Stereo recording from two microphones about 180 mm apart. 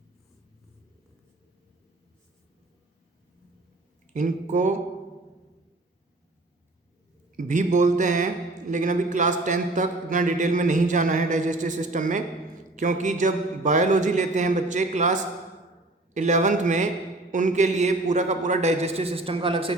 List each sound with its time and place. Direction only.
4.0 s speech: 45° right (ahead or behind)
7.3 s a man's voice: 45° right (ahead or behind)